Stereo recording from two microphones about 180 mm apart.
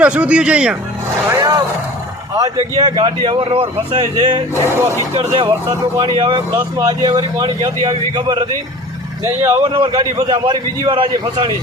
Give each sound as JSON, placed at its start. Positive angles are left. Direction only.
{"t": 0.0, "sound": "speech", "side_deg": -5}
{"t": 1.3, "sound": "vehicle", "side_deg": -15}
{"t": 2.3, "sound": "speech", "side_deg": -20}